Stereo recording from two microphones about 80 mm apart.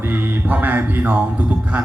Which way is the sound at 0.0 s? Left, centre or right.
Right.